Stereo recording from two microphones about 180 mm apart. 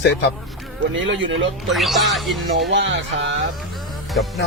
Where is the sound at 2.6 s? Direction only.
90° right.